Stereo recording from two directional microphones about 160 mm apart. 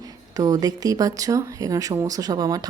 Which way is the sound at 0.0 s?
25° right (ahead or behind).